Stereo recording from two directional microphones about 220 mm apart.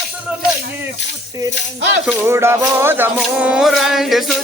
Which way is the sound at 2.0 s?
10° right (ahead or behind).